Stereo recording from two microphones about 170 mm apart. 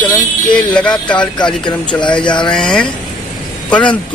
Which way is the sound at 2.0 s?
25° left (ahead or behind).